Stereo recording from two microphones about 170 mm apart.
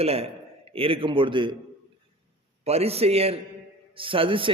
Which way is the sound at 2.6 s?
35° right (ahead or behind).